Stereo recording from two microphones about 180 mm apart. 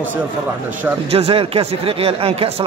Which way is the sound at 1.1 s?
35° right (ahead or behind).